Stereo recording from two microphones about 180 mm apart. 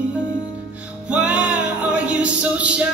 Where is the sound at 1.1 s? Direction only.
5° right (ahead or behind).